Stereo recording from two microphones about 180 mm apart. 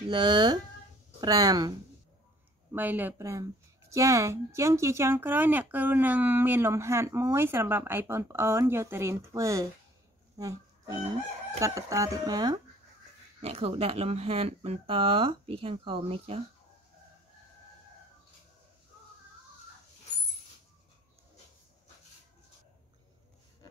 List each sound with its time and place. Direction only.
0.1 s speech: 25° right (ahead or behind)
2.7 s speech: 10° right (ahead or behind)
10.3 s music: 20° right (ahead or behind)
11.6 s speech: 20° right (ahead or behind)
13.4 s speech: 30° right (ahead or behind)